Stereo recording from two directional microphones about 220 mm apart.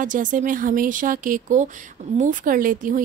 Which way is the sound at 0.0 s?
35° right (ahead or behind).